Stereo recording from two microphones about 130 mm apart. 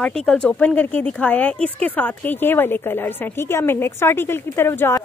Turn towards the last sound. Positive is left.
turn(degrees=20)  # may be behind; listen again after turning